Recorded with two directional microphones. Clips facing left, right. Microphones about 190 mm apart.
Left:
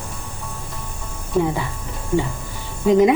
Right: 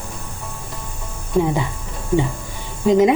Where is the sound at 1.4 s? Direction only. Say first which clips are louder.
Right 1 dB; centre (ahead or behind).